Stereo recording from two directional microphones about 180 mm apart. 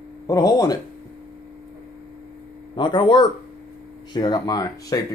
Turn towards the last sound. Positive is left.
turn(degrees=20)  # may be behind; listen again after turning